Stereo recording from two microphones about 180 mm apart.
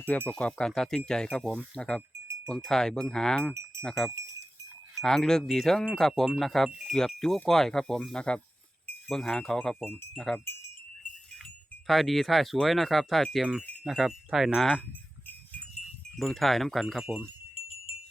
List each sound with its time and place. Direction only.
0.1 s wind chime: 5° left (ahead or behind)
3.5 s speech: 15° right (ahead or behind)
3.8 s wind chime: centre (ahead or behind)
11.4 s speech: centre (ahead or behind)
13.8 s wind chime: centre (ahead or behind)
16.1 s wind chime: centre (ahead or behind)